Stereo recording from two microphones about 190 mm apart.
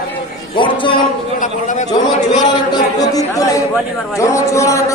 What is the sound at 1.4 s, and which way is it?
Speech, 40° left (ahead or behind).